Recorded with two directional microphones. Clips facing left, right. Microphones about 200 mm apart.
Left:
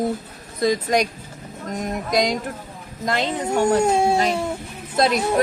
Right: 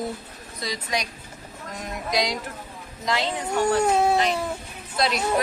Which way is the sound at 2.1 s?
50° left (ahead or behind).